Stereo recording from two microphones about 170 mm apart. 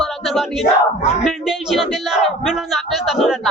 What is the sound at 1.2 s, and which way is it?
A man's voice, centre (ahead or behind).